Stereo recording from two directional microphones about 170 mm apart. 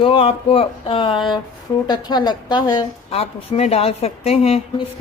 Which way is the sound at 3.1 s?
35° left (ahead or behind).